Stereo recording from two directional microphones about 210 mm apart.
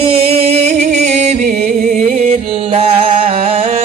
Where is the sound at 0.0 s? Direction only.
25° right (ahead or behind).